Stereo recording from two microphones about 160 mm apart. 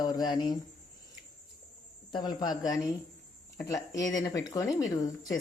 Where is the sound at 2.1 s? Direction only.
25° left (ahead or behind).